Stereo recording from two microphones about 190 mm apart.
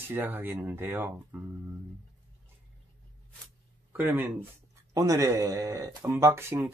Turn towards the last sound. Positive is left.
turn(degrees=-15)  # may be behind; listen again after turning